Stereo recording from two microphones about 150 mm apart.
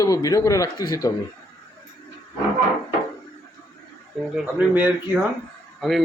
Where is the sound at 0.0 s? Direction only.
25° left (ahead or behind).